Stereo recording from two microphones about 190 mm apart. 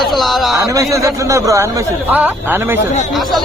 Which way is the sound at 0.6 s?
15° right (ahead or behind).